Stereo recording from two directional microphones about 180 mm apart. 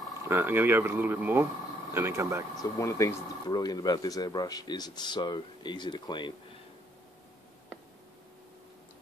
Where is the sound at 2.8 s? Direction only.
15° left (ahead or behind).